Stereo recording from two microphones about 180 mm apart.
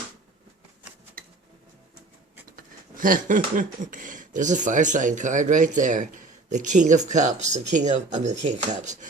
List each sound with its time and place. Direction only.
2.9 s speech: 50° right (ahead or behind)